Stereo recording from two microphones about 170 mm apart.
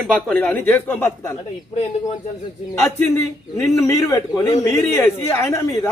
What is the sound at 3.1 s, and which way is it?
A man's voice, 15° left (ahead or behind).